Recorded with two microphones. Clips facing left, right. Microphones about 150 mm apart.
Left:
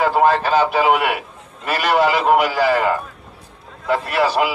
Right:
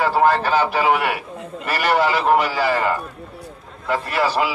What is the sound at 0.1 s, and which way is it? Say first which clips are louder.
A man's voice: left 1 dB; 15° left (ahead or behind).